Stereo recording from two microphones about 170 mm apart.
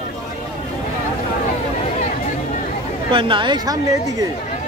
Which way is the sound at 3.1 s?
30° right (ahead or behind).